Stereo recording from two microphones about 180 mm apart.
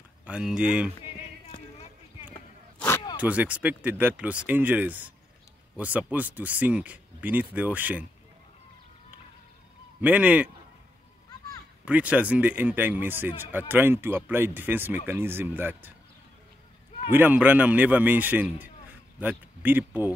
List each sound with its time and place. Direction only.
0.2 s speech: 5° right (ahead or behind)
3.2 s speech: 5° right (ahead or behind)
9.9 s speech: 10° right (ahead or behind)
11.8 s speech: 10° right (ahead or behind)
17.1 s speech: 10° right (ahead or behind)